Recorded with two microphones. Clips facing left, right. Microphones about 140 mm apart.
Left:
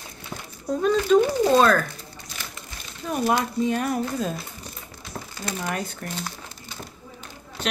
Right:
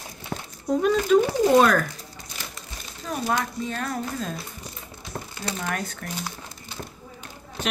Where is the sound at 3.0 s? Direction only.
10° left (ahead or behind).